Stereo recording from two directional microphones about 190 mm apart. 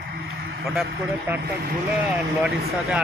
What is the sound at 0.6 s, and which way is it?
Speech, centre (ahead or behind).